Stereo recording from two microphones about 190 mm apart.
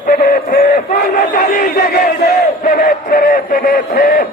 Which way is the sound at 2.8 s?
45° left (ahead or behind).